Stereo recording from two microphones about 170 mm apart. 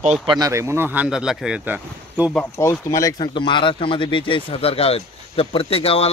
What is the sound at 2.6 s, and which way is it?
Speech, 15° left (ahead or behind).